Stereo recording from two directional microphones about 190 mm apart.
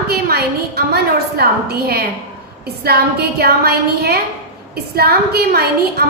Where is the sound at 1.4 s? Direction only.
55° right (ahead or behind).